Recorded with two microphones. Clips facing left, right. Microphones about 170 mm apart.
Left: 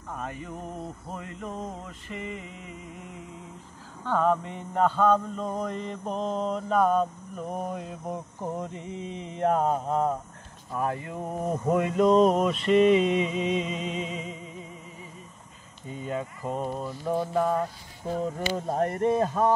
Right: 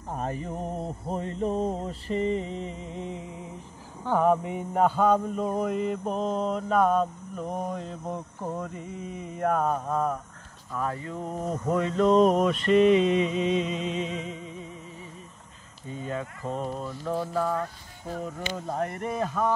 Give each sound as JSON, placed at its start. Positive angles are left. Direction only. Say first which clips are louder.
{"t": 0.1, "sound": "mantra", "louder": "right 4 dB", "side_deg": -35}
{"t": 4.0, "sound": "mantra", "louder": "right 2 dB", "side_deg": -15}
{"t": 8.5, "sound": "mantra", "louder": "left 1 dB", "side_deg": 20}
{"t": 10.7, "sound": "speech", "louder": "left 1 dB", "side_deg": 20}
{"t": 12.1, "sound": "mantra", "louder": "right 1 dB", "side_deg": 0}
{"t": 16.1, "sound": "speech", "louder": "left 1 dB", "side_deg": 10}
{"t": 18.7, "sound": "speech", "louder": "left 6 dB", "side_deg": 40}